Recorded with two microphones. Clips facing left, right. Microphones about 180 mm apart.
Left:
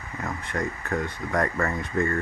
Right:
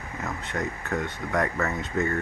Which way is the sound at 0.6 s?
5° right (ahead or behind).